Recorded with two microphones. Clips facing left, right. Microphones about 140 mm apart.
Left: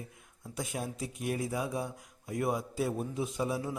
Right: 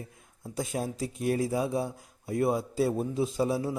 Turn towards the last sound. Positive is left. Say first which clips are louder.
# right 5 dB
turn(degrees=-30)  # may be behind; listen again after turning